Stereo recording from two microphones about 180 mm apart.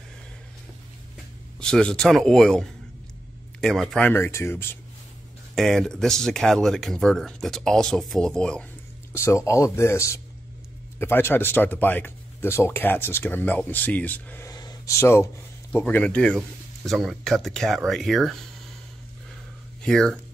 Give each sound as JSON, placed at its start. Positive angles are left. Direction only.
{"t": 1.6, "sound": "speech", "side_deg": 5}
{"t": 5.5, "sound": "speech", "side_deg": 0}
{"t": 9.1, "sound": "speech", "side_deg": 15}
{"t": 19.8, "sound": "speech", "side_deg": 5}